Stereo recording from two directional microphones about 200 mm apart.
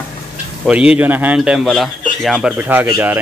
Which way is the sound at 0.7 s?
5° right (ahead or behind).